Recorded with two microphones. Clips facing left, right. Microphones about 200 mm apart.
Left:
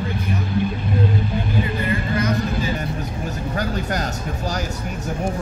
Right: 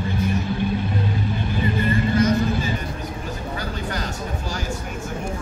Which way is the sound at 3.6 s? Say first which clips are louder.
Left 7 dB; 45° left (ahead or behind).